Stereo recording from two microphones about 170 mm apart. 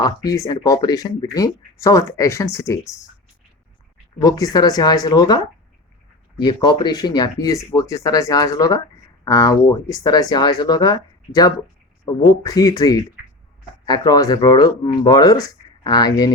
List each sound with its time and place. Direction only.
0.0 s speech: 20° left (ahead or behind)
4.2 s speech: 20° left (ahead or behind)